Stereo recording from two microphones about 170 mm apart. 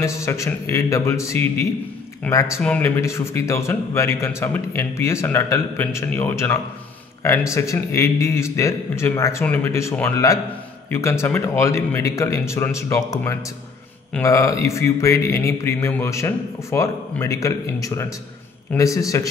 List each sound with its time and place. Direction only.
0.0 s a man's voice: 15° left (ahead or behind)